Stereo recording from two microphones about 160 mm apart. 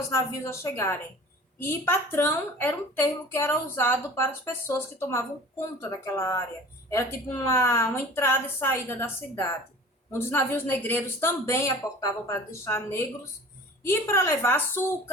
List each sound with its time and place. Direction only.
0.1 s a woman's voice: 15° left (ahead or behind)